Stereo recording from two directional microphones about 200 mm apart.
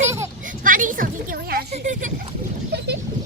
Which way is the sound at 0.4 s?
40° right (ahead or behind).